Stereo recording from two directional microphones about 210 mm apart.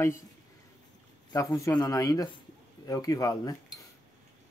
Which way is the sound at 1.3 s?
15° left (ahead or behind).